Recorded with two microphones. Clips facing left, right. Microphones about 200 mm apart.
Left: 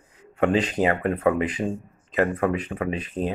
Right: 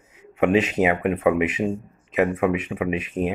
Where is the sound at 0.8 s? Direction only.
5° right (ahead or behind).